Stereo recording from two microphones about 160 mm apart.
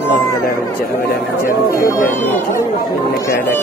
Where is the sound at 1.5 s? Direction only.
15° left (ahead or behind).